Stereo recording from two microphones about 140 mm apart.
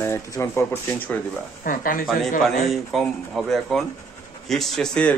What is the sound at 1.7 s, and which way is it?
Speech, 80° left.